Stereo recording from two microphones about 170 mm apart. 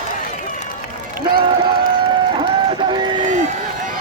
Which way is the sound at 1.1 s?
60° right (ahead or behind).